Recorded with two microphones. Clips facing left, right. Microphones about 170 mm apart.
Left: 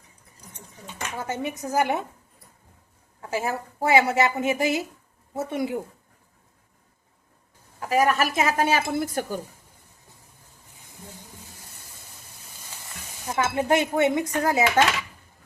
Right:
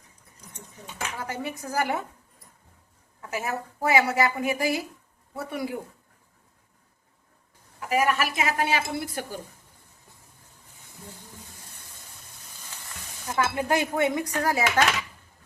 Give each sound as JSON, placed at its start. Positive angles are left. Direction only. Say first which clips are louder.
{"t": 1.1, "sound": "a woman's voice", "louder": "left 5 dB", "side_deg": 25}
{"t": 3.2, "sound": "a woman's voice", "louder": "left 3 dB", "side_deg": 30}
{"t": 7.8, "sound": "a woman's voice", "louder": "left 3 dB", "side_deg": 35}
{"t": 13.2, "sound": "a woman's voice", "louder": "left 2 dB", "side_deg": 20}